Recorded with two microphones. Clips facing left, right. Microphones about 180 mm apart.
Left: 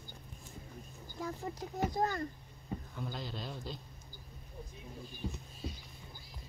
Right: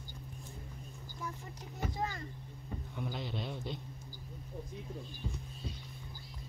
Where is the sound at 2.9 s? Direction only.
Centre (ahead or behind).